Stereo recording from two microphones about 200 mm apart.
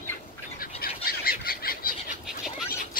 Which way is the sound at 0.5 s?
45° left (ahead or behind).